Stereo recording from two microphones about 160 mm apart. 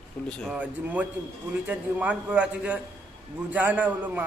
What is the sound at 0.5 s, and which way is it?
Speech, 10° right (ahead or behind).